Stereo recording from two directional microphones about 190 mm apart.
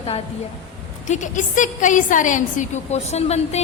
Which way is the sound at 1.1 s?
40° left (ahead or behind).